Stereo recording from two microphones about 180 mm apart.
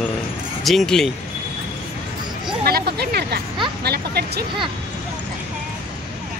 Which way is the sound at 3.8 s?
65° right (ahead or behind).